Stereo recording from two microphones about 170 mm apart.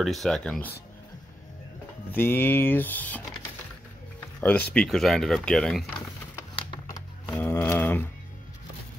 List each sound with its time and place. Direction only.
0.0 s speech: centre (ahead or behind)
2.1 s speech: 10° left (ahead or behind)
4.4 s speech: 10° left (ahead or behind)
7.2 s a sound: 15° left (ahead or behind)